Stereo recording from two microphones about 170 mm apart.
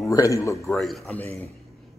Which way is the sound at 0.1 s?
20° left (ahead or behind).